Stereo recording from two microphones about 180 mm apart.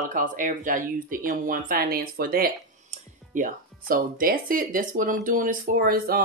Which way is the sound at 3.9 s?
50° right (ahead or behind).